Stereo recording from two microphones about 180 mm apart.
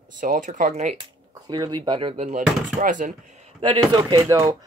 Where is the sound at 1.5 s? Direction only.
25° right (ahead or behind); by 3.2 s 45° right (ahead or behind).